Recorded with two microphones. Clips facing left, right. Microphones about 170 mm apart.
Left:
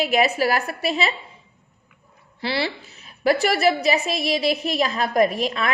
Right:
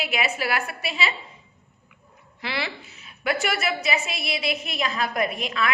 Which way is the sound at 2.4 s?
30° left (ahead or behind).